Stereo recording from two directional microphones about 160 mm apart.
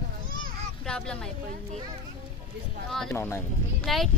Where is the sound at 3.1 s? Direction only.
15° left (ahead or behind).